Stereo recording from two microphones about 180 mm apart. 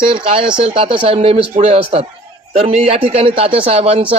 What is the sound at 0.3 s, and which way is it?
A woman's voice, 30° right (ahead or behind).